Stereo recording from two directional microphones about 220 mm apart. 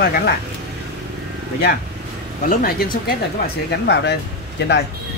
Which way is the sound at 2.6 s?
45° left (ahead or behind).